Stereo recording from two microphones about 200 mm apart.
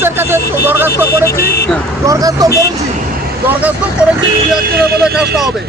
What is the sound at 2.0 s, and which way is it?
Speech, 15° right (ahead or behind).